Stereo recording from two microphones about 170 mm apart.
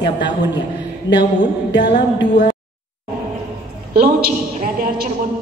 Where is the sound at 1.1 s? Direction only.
25° left (ahead or behind).